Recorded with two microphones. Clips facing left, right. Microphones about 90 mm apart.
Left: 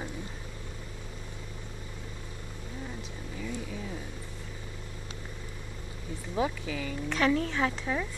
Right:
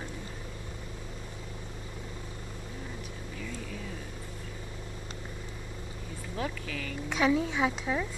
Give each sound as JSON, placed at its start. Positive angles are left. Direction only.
{"t": 6.3, "sound": "speech", "side_deg": 20}
{"t": 7.1, "sound": "a woman's voice", "side_deg": -10}